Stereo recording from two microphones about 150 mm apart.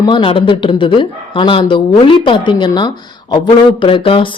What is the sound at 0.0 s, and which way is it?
Speech, 30° left (ahead or behind).